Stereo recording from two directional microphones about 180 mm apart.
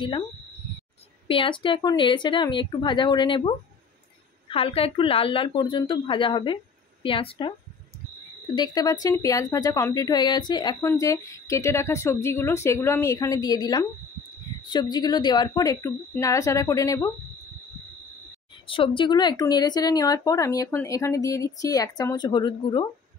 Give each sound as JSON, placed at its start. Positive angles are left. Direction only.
{"t": 1.2, "sound": "speech", "side_deg": 30}
{"t": 8.5, "sound": "speech", "side_deg": 20}
{"t": 18.7, "sound": "speech", "side_deg": 30}